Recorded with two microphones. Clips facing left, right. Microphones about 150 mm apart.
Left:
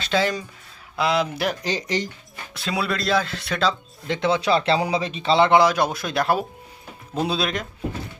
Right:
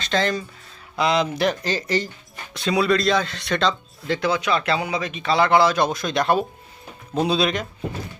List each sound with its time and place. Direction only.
0.0 s speech: 10° left (ahead or behind)
2.5 s speech: 5° left (ahead or behind)
4.0 s speech: 20° left (ahead or behind); by 7.7 s centre (ahead or behind)